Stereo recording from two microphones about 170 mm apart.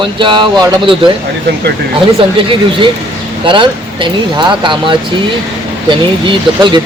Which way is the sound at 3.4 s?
30° right (ahead or behind).